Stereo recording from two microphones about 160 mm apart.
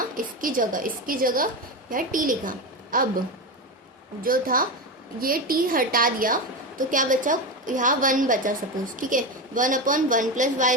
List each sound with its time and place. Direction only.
0.4 s a woman's voice: 60° right (ahead or behind)